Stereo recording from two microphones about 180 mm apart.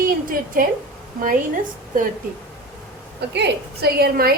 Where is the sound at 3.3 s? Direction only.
65° right (ahead or behind).